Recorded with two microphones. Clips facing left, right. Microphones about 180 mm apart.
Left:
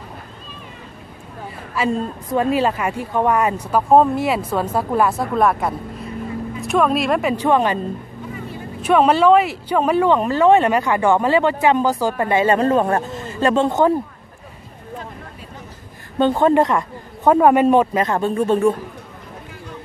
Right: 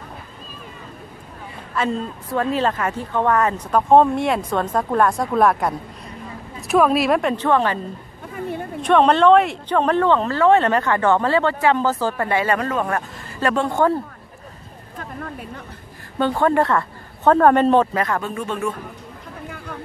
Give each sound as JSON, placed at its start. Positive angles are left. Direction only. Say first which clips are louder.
{"t": 1.8, "sound": "speech", "louder": "left 2 dB", "side_deg": 10}
{"t": 7.4, "sound": "speech", "louder": "left 4 dB", "side_deg": 15}
{"t": 8.8, "sound": "speech", "louder": "even", "side_deg": 5}
{"t": 16.2, "sound": "speech", "louder": "left 3 dB", "side_deg": 20}
{"t": 18.0, "sound": "speech", "louder": "left 6 dB", "side_deg": 30}